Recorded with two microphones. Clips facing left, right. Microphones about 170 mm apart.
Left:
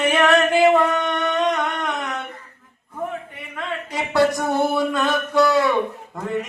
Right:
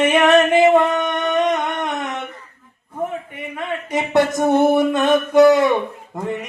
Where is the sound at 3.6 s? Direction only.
20° right (ahead or behind).